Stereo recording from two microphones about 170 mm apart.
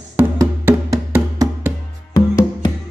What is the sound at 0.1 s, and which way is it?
Music, 10° right (ahead or behind).